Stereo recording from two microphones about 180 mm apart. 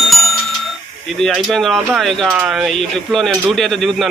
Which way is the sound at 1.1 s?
Centre (ahead or behind).